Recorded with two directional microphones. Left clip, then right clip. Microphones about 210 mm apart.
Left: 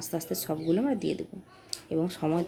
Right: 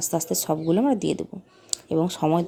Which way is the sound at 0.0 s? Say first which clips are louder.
Right 8 dB; 40° right (ahead or behind).